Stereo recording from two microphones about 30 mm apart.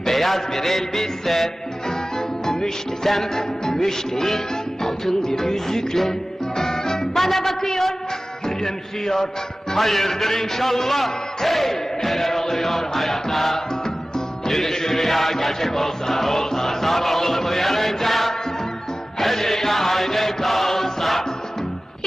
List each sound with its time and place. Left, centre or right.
0.0 s music: centre
8.4 s a man's voice: centre
9.7 s music: centre